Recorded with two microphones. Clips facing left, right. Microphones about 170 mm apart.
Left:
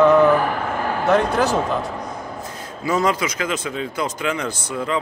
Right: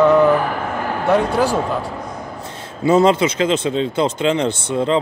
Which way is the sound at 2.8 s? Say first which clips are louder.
Right 7 dB; 25° right (ahead or behind).